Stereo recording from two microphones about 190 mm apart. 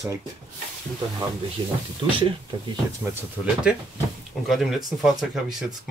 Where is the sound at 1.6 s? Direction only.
30° right (ahead or behind).